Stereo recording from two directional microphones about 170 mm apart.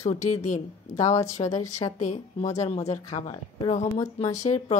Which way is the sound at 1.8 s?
45° left (ahead or behind).